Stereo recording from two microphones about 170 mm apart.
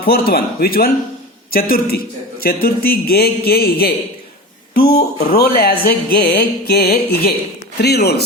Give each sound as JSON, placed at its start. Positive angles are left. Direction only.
{"t": 0.0, "sound": "speech", "side_deg": 65}